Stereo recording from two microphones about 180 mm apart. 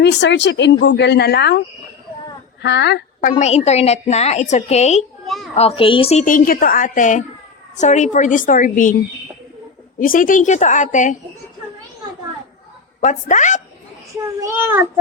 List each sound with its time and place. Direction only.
0.0 s speech: 75° left (ahead or behind)
3.2 s a woman's voice: 45° left (ahead or behind)
5.2 s a sound: centre (ahead or behind)
5.5 s a woman's voice: 30° left (ahead or behind)
6.2 s a woman's voice: 50° left (ahead or behind)
10.0 s a woman's voice: 50° left (ahead or behind)
13.0 s a woman's voice: 45° left (ahead or behind)
14.4 s a child's voice: 10° right (ahead or behind)